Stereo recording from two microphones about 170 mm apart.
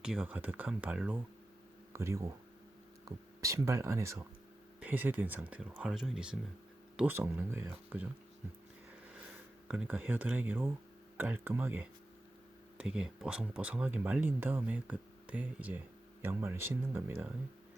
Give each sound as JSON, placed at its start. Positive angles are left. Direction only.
{"t": 0.0, "sound": "speech", "side_deg": -5}
{"t": 3.4, "sound": "speech", "side_deg": -20}
{"t": 9.6, "sound": "speech", "side_deg": -10}